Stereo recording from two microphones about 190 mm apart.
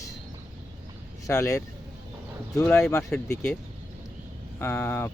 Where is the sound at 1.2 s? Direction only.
15° left (ahead or behind).